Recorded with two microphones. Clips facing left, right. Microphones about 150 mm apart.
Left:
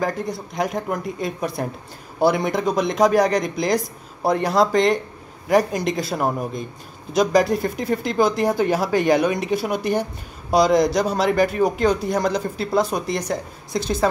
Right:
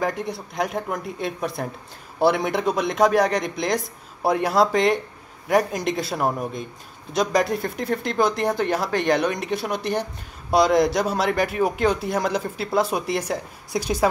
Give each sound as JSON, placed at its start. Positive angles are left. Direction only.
{"t": 0.0, "sound": "speech", "side_deg": 0}